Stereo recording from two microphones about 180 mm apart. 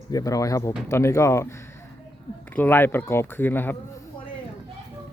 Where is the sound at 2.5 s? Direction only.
10° left (ahead or behind).